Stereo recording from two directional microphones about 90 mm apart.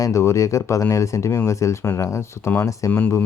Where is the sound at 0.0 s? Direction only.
35° left (ahead or behind).